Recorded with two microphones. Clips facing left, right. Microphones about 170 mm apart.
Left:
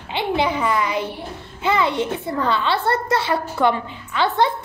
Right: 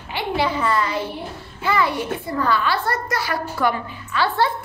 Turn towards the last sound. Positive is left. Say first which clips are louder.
# left 1 dB
turn(degrees=20)  # may be behind; listen again after turning